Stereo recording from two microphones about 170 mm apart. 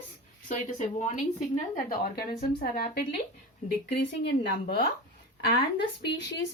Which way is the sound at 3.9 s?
70° left (ahead or behind).